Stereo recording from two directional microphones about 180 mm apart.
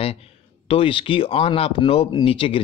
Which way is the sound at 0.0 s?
35° left (ahead or behind).